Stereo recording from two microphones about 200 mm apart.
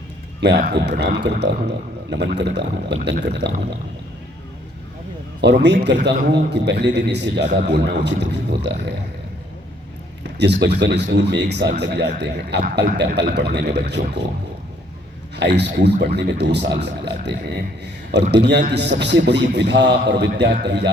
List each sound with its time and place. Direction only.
0.3 s a man's voice: 60° right (ahead or behind)
5.4 s a man's voice: 60° right (ahead or behind)
10.3 s a man's voice: 60° right (ahead or behind)
15.4 s a man's voice: 55° right (ahead or behind)